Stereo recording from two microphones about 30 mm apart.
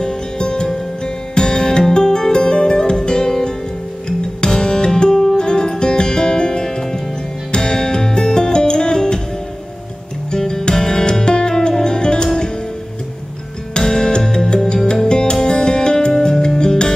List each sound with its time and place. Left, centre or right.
0.0 s music: left
4.4 s music: left
10.3 s music: left
13.7 s music: left
15.0 s music: left